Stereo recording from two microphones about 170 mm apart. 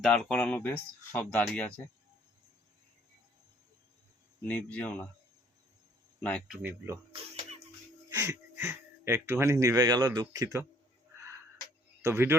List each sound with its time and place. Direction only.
0.0 s speech: 5° left (ahead or behind)
4.4 s speech: 10° left (ahead or behind)
6.1 s speech: 5° left (ahead or behind)
6.6 s speech: 15° right (ahead or behind)
8.2 s speech: 15° right (ahead or behind)
12.0 s speech: 15° right (ahead or behind)